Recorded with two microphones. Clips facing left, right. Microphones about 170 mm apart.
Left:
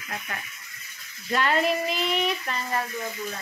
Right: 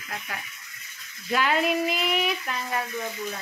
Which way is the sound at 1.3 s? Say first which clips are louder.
Even; 5° right (ahead or behind).